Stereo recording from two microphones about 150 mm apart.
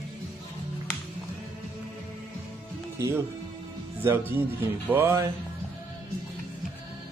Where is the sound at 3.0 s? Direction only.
20° right (ahead or behind).